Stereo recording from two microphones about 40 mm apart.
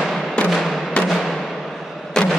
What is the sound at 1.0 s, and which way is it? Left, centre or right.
Music, left.